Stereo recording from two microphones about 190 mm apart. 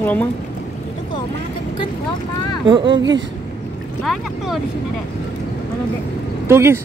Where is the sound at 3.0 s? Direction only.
75° right (ahead or behind).